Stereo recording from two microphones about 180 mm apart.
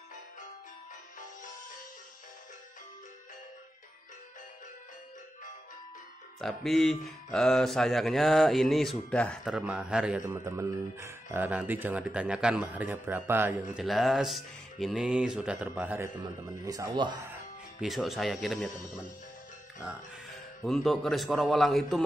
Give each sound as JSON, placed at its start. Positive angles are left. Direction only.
{"t": 6.4, "sound": "a man's voice", "side_deg": 0}
{"t": 13.8, "sound": "speech", "side_deg": 0}
{"t": 17.3, "sound": "speech", "side_deg": -5}
{"t": 19.8, "sound": "speech", "side_deg": 0}